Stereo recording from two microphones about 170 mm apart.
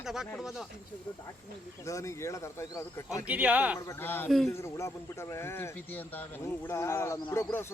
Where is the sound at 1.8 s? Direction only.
20° left (ahead or behind).